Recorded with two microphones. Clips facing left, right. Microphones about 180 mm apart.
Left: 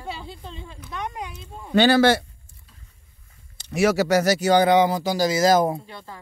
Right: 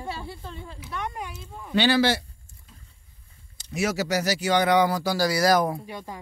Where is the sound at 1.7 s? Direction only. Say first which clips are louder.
Left 5 dB; 45° left (ahead or behind).